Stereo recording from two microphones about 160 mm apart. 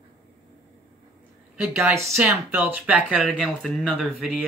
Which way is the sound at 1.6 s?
10° right (ahead or behind).